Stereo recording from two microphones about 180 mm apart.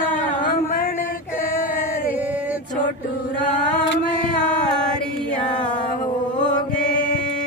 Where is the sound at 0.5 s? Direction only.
50° left (ahead or behind).